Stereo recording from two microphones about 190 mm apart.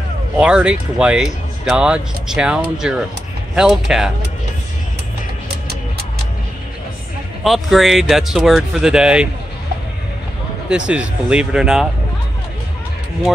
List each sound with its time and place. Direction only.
0.4 s speech: 5° right (ahead or behind)
7.4 s speech: centre (ahead or behind)
10.7 s speech: 5° right (ahead or behind)